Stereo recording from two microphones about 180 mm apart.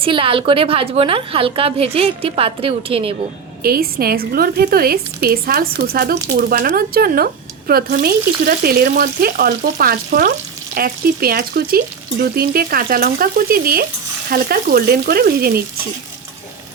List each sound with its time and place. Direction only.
0.0 s a woman's voice: 30° right (ahead or behind)
3.6 s a woman's voice: 55° right (ahead or behind)